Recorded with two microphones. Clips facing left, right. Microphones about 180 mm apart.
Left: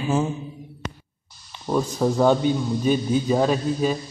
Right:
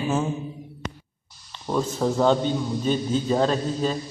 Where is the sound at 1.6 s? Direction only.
5° left (ahead or behind).